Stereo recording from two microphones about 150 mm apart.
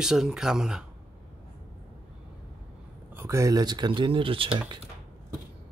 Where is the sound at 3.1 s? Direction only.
20° right (ahead or behind); by 4.6 s 35° right (ahead or behind).